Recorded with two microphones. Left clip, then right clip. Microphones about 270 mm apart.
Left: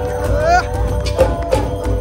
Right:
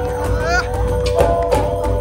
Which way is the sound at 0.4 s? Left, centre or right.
Centre.